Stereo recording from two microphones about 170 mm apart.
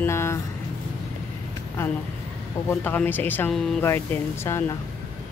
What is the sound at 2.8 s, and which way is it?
Speech, 10° left (ahead or behind).